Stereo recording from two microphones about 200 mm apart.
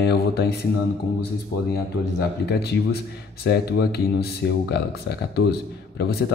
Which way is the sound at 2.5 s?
55° left (ahead or behind).